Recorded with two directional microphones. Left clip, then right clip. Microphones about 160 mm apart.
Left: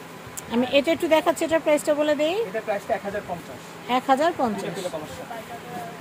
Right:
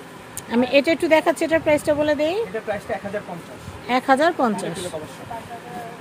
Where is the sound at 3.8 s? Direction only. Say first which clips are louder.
Right 3 dB; 35° right (ahead or behind).